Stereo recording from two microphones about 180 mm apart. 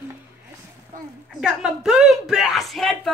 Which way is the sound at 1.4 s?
5° right (ahead or behind).